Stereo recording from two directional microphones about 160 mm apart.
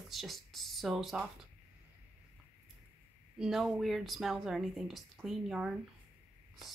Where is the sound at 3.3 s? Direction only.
5° right (ahead or behind).